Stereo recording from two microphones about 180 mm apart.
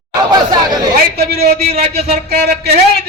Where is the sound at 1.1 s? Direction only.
60° right (ahead or behind).